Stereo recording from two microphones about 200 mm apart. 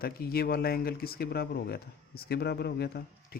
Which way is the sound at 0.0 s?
50° left (ahead or behind).